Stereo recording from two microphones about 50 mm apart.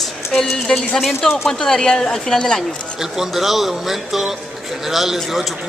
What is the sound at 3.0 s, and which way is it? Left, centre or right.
A man's voice, centre.